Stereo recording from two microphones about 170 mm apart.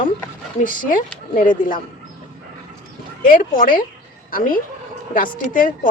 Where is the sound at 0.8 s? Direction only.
55° left (ahead or behind).